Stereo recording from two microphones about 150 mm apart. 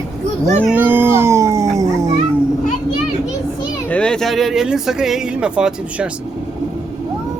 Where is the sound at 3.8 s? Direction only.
5° left (ahead or behind).